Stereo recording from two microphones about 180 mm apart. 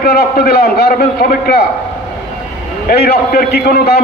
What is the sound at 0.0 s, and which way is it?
A man's voice, 60° left (ahead or behind).